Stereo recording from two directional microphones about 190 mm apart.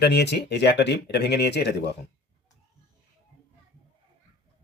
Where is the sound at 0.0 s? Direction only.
60° left (ahead or behind).